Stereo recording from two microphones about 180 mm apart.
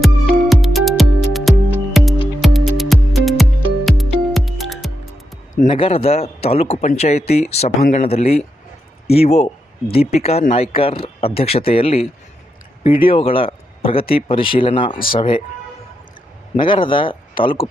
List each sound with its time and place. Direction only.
0.0 s music: centre (ahead or behind)
5.5 s speech: 30° left (ahead or behind)
16.6 s speech: 25° left (ahead or behind)